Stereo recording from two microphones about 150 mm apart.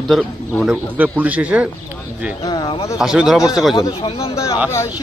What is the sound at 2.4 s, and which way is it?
Speech, 30° left (ahead or behind).